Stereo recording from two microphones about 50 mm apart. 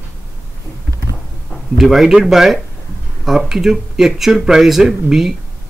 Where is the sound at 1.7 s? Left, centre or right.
Centre.